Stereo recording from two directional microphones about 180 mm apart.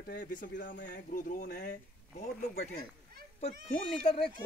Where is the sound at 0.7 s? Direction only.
75° left (ahead or behind).